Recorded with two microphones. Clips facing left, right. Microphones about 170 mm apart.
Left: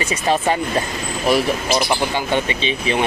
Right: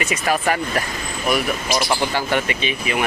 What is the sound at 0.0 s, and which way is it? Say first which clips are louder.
Speech: left 2 dB; 30° left (ahead or behind).